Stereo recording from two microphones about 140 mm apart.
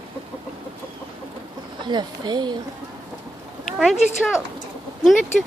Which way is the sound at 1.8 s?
30° right (ahead or behind).